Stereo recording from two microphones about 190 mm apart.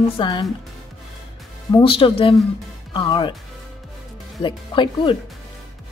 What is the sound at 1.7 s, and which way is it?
Speech, 25° left (ahead or behind).